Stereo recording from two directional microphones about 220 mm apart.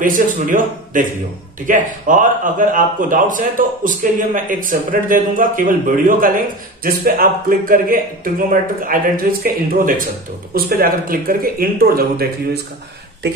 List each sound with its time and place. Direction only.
0.0 s a man's voice: 35° right (ahead or behind)